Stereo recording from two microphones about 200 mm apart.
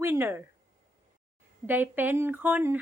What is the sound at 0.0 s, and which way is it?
Speech, 10° right (ahead or behind).